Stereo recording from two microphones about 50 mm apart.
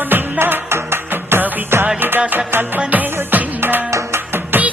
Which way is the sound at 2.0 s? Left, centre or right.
Right.